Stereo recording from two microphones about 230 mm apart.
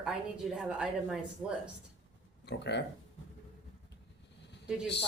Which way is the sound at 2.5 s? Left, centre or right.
Left.